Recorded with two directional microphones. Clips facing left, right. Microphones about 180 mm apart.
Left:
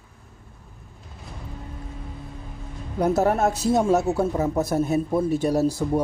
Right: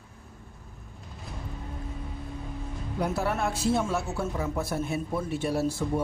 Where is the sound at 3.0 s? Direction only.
45° left (ahead or behind).